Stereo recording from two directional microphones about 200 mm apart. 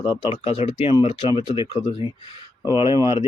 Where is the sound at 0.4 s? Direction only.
30° left (ahead or behind).